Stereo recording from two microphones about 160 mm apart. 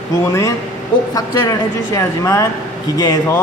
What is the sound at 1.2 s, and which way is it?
Speech, 20° left (ahead or behind).